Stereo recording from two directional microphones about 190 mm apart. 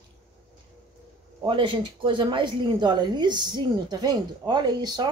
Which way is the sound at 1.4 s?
25° right (ahead or behind).